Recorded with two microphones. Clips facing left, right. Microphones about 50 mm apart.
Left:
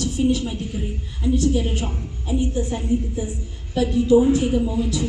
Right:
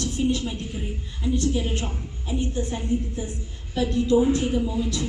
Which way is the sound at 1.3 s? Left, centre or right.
Centre.